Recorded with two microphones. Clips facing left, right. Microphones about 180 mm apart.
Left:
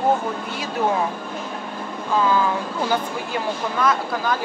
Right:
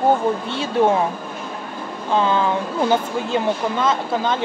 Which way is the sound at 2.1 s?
25° right (ahead or behind).